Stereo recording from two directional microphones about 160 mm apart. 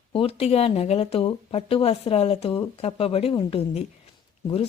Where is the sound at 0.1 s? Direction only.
35° left (ahead or behind).